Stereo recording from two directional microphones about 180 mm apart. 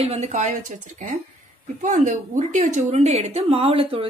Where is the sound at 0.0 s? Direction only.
35° right (ahead or behind).